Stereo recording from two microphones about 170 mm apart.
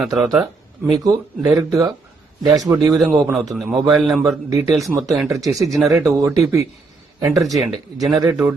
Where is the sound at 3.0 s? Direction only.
5° right (ahead or behind).